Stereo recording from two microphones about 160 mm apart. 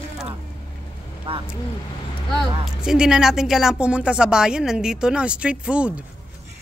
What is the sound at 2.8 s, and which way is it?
Speech, 5° right (ahead or behind).